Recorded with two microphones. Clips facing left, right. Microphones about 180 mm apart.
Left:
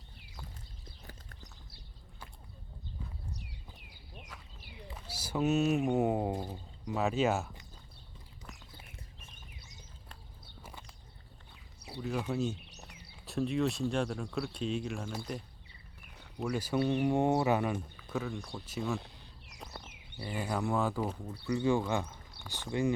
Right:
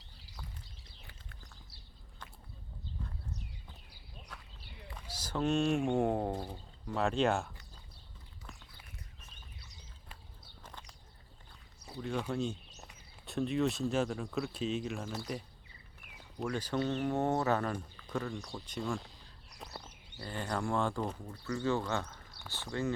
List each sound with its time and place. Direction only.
4.9 s speech: 10° left (ahead or behind)
10.6 s walk: 10° left (ahead or behind)
11.9 s speech: 5° left (ahead or behind)
12.5 s a sound: 70° left (ahead or behind)
13.2 s speech: centre (ahead or behind)
20.2 s speech: 10° left (ahead or behind)